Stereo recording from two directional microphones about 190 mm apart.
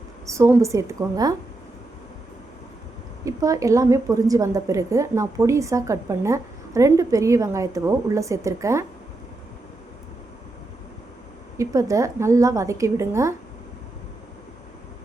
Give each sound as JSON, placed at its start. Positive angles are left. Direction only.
{"t": 0.3, "sound": "a woman's voice", "side_deg": -15}
{"t": 3.2, "sound": "a woman's voice", "side_deg": -15}
{"t": 11.5, "sound": "a woman's voice", "side_deg": -15}